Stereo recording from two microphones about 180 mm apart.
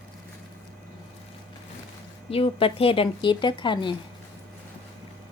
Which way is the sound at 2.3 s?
30° left (ahead or behind).